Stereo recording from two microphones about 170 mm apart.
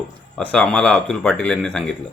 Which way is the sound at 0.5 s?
5° left (ahead or behind).